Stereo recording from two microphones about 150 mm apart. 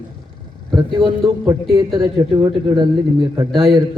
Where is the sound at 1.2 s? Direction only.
25° right (ahead or behind).